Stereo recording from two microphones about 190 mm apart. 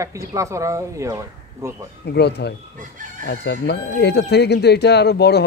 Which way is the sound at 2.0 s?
60° left (ahead or behind).